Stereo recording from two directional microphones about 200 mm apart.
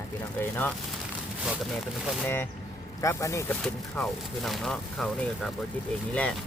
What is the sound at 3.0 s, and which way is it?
Speech, 15° left (ahead or behind).